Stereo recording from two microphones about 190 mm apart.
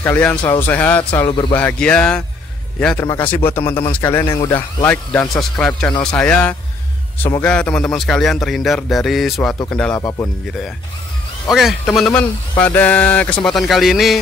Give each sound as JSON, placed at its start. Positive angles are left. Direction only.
{"t": 0.0, "sound": "speech", "side_deg": 10}
{"t": 0.4, "sound": "speech", "side_deg": 25}
{"t": 0.7, "sound": "speech", "side_deg": 10}
{"t": 1.2, "sound": "speech", "side_deg": 25}
{"t": 1.5, "sound": "speech", "side_deg": 10}
{"t": 10.0, "sound": "speech", "side_deg": 15}
{"t": 11.4, "sound": "speech", "side_deg": 0}